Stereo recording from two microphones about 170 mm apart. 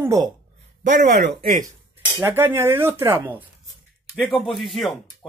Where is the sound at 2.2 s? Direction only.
15° right (ahead or behind).